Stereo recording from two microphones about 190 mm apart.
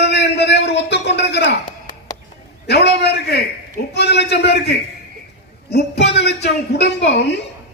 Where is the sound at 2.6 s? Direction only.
60° left (ahead or behind).